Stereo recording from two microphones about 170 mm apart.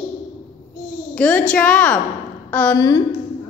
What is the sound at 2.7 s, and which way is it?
Speech, 20° left (ahead or behind).